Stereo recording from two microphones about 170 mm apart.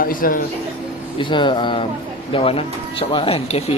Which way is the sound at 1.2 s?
30° left (ahead or behind).